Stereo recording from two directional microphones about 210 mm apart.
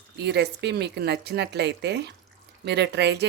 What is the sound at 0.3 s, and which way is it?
Speech, 55° right (ahead or behind).